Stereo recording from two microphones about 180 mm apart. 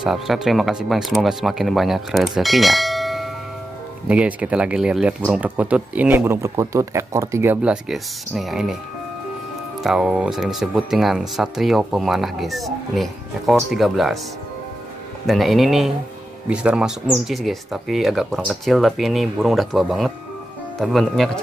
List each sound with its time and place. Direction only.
0.0 s speech: centre (ahead or behind)
9.8 s speech: 5° right (ahead or behind)
15.2 s speech: centre (ahead or behind)